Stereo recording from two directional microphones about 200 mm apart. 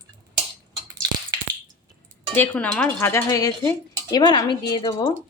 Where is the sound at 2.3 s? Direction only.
10° left (ahead or behind).